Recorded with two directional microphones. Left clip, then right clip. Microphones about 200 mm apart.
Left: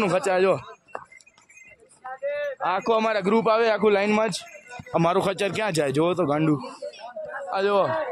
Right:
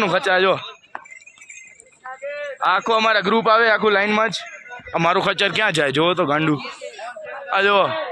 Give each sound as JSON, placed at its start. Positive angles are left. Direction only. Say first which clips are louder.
{"t": 0.0, "sound": "speech", "louder": "right 4 dB", "side_deg": -5}
{"t": 2.0, "sound": "a sound", "louder": "left 1 dB", "side_deg": -45}
{"t": 2.6, "sound": "a man's voice", "louder": "right 6 dB", "side_deg": 10}
{"t": 7.5, "sound": "speech", "louder": "right 6 dB", "side_deg": -5}